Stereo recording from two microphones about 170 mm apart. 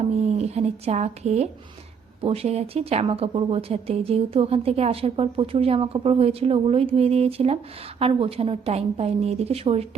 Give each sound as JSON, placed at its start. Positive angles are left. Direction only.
{"t": 0.0, "sound": "speech", "side_deg": -40}